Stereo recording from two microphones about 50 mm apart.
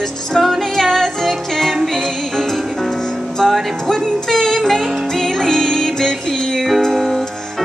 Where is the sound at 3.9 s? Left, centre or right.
Centre.